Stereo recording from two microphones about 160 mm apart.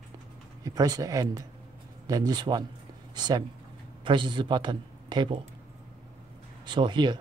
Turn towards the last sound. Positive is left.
turn(degrees=-30)  # may be behind; listen again after turning